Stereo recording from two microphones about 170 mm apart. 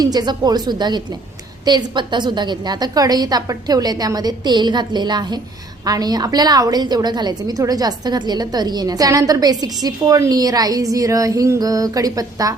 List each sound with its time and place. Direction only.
0.0 s a woman's voice: 25° right (ahead or behind)